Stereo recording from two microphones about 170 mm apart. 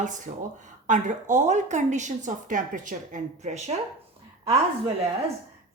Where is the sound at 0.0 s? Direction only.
45° right (ahead or behind).